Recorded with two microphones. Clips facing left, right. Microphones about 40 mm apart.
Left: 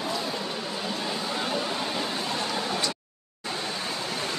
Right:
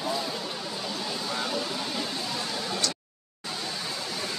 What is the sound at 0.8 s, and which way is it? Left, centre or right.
Vehicle, centre.